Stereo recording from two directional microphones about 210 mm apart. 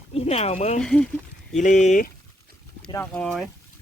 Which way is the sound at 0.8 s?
5° left (ahead or behind).